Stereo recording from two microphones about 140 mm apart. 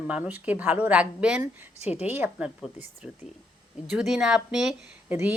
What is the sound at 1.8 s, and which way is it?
Speech, 50° left (ahead or behind).